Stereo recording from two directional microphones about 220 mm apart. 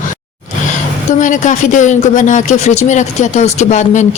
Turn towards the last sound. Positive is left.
turn(degrees=30)  # may be behind; listen again after turning